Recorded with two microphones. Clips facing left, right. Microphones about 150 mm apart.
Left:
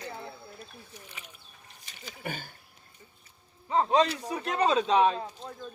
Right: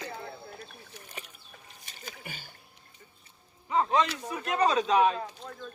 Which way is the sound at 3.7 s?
30° left (ahead or behind).